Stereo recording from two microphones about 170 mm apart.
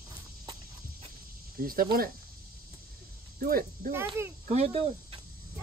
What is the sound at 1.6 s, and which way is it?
Speech, 60° right (ahead or behind).